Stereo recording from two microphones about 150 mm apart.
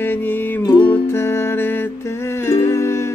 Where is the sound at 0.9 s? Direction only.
15° left (ahead or behind).